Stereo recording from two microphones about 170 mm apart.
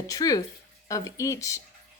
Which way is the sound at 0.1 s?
20° left (ahead or behind).